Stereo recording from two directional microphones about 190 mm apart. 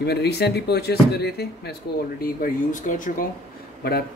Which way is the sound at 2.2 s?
45° left (ahead or behind).